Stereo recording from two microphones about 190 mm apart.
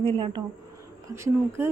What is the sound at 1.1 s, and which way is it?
Speech, 15° right (ahead or behind).